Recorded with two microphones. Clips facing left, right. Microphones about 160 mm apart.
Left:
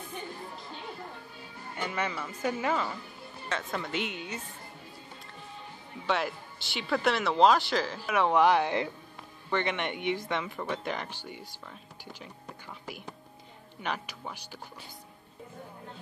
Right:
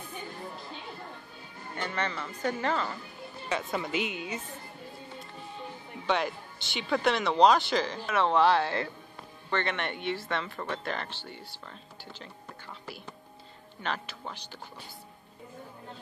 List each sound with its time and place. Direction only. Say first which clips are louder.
1.8 s speech: even; 10° left (ahead or behind)
3.4 s speech: right 2 dB; 5° right (ahead or behind)
6.0 s speech: right 1 dB; centre (ahead or behind)